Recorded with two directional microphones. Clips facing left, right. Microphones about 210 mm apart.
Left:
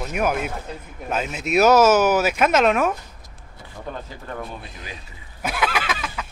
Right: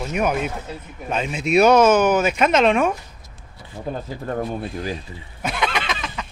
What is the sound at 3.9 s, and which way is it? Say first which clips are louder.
Speech: right 9 dB; 40° right (ahead or behind).